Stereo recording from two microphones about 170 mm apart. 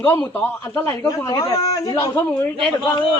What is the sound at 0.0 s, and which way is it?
A man's voice, 15° left (ahead or behind).